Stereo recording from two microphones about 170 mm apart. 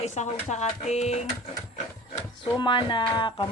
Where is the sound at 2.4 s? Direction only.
30° left (ahead or behind).